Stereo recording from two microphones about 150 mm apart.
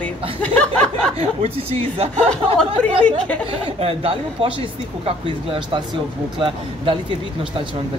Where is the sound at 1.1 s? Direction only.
40° right (ahead or behind).